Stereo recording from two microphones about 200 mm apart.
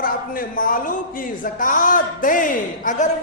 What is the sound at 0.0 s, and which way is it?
A man's voice, 45° left (ahead or behind).